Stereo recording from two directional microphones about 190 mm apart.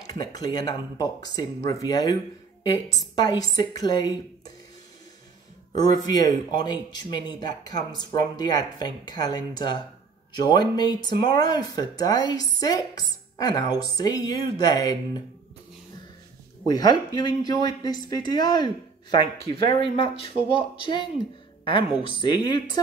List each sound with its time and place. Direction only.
0.2 s speech: 20° left (ahead or behind)
5.8 s speech: 20° left (ahead or behind)
16.6 s speech: 20° left (ahead or behind)